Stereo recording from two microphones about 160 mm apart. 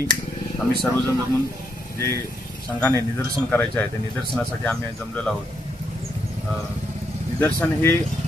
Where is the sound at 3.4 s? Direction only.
15° left (ahead or behind).